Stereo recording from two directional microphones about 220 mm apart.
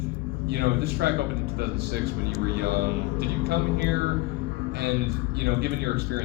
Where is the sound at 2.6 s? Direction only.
45° right (ahead or behind).